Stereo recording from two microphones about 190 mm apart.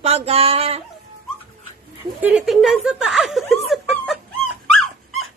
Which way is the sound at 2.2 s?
5° right (ahead or behind).